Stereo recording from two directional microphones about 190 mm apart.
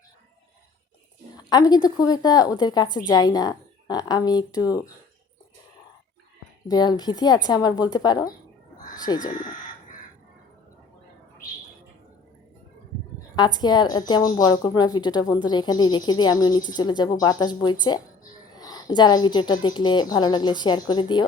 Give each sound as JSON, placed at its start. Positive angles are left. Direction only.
{"t": 1.4, "sound": "speech", "side_deg": 20}
{"t": 6.7, "sound": "speech", "side_deg": 20}
{"t": 9.3, "sound": "chicken", "side_deg": 45}
{"t": 13.3, "sound": "speech", "side_deg": 20}